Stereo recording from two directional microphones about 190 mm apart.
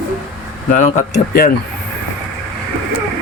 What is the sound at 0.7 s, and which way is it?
Speech, 40° left (ahead or behind).